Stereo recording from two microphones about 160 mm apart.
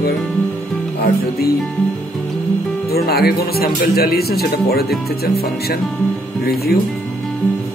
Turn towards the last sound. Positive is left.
turn(degrees=75)  # may be behind; listen again after turning